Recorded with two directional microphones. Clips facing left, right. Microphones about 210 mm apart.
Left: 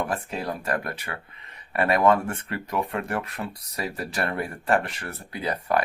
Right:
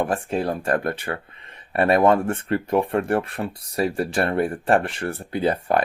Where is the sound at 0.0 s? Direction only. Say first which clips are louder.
Right 6 dB; 25° right (ahead or behind).